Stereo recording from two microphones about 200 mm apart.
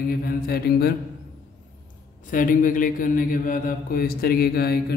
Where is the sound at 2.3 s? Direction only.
40° left (ahead or behind).